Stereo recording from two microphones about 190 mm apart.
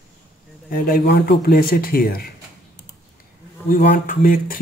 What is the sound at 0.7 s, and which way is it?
Speech, 50° left (ahead or behind).